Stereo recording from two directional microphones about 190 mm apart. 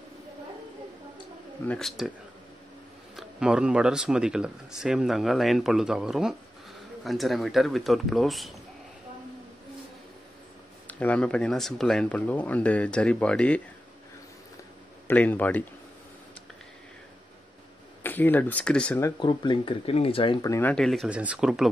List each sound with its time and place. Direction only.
1.7 s speech: centre (ahead or behind)
3.2 s speech: 5° right (ahead or behind)
10.9 s speech: 10° left (ahead or behind)
15.0 s speech: 10° left (ahead or behind)
18.0 s speech: 10° left (ahead or behind); by 20.5 s 30° left (ahead or behind)
20.5 s speech: 5° left (ahead or behind)